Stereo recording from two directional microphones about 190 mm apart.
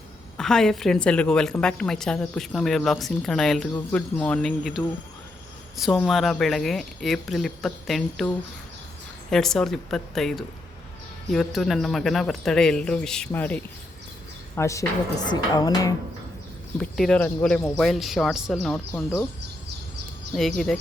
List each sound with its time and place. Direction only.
0.3 s a woman's voice: 5° left (ahead or behind); by 15.9 s 20° left (ahead or behind)
16.8 s a woman's voice: 5° left (ahead or behind)
20.3 s a woman's voice: centre (ahead or behind)